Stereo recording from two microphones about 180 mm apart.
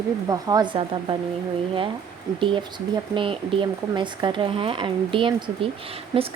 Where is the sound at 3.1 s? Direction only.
30° right (ahead or behind).